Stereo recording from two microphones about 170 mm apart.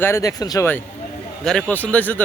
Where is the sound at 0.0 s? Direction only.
20° left (ahead or behind).